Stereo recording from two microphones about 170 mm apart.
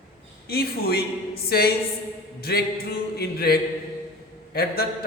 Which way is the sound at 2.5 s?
70° left (ahead or behind).